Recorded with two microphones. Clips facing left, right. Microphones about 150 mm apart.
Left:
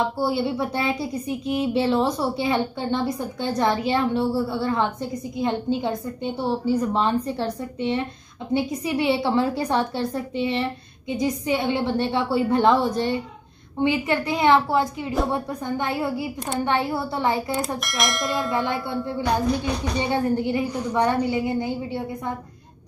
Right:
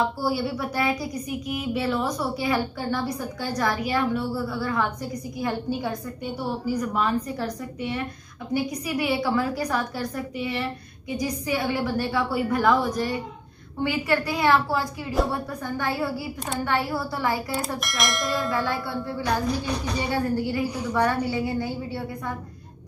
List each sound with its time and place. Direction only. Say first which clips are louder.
0.0 s speech: left 2 dB; 25° left (ahead or behind)
17.7 s speech: left 2 dB; centre (ahead or behind)
18.5 s speech: left 2 dB; 20° left (ahead or behind)